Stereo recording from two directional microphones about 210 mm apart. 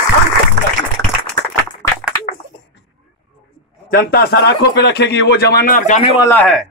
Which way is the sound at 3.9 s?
45° left (ahead or behind).